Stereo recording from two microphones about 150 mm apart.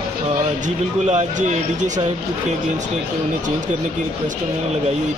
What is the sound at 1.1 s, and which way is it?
Speech, 55° right (ahead or behind).